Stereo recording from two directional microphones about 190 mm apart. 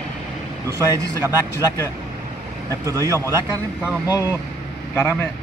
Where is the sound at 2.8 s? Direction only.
15° right (ahead or behind).